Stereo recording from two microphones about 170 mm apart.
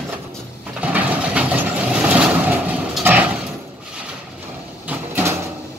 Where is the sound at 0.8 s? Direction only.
10° right (ahead or behind).